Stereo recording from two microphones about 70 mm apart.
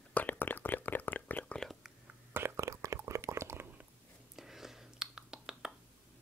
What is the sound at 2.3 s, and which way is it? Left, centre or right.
Whispering, right.